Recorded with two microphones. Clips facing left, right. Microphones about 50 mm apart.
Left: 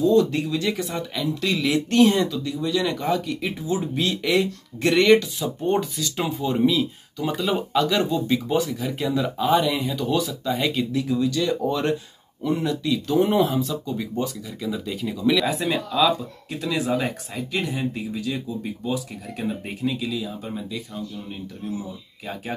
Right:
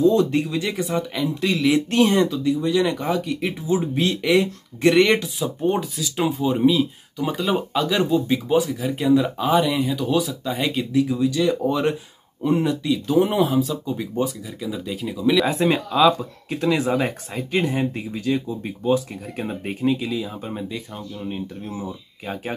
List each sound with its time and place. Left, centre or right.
0.0 s speech: centre
0.6 s speech: centre
2.4 s speech: centre
3.0 s speech: centre
3.3 s speech: centre
9.4 s speech: centre
12.4 s speech: right
12.9 s speech: centre
13.8 s speech: centre
14.6 s speech: centre
15.4 s speech: right